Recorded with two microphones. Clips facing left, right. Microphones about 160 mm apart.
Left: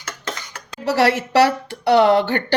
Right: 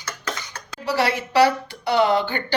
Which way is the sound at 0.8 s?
75° left (ahead or behind).